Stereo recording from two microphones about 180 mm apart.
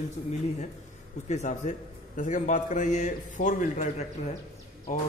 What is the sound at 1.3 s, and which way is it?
A man's voice, 40° left (ahead or behind).